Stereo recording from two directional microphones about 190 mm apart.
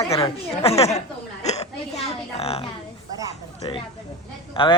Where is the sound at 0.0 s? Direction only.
30° left (ahead or behind).